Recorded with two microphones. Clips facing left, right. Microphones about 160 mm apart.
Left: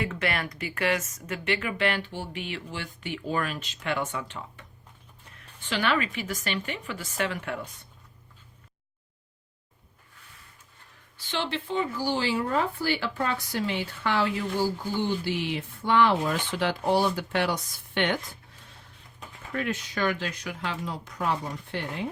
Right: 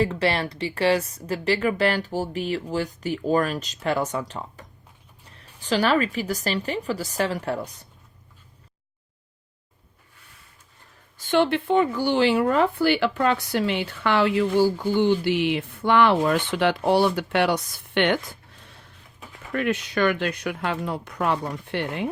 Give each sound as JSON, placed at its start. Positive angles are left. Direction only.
{"t": 0.0, "sound": "a woman's voice", "side_deg": -30}
{"t": 11.2, "sound": "speech", "side_deg": -55}
{"t": 19.5, "sound": "speech", "side_deg": -70}